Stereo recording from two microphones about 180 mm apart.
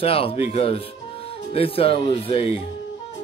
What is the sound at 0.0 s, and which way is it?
Speech, 30° left (ahead or behind).